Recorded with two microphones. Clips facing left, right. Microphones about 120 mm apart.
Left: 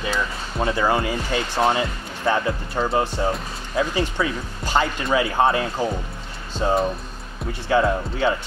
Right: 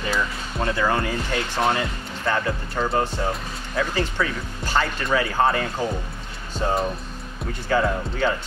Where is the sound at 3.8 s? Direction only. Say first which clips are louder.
Left 2 dB; 15° left (ahead or behind).